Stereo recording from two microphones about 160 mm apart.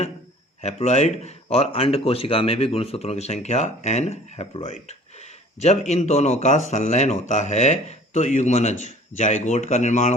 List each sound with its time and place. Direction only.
0.6 s speech: 45° left (ahead or behind)